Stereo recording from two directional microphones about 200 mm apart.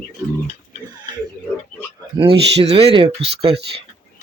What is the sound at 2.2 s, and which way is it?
Speech, 30° right (ahead or behind).